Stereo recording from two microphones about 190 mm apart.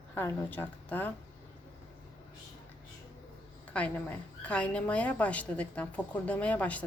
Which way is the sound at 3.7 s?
5° left (ahead or behind).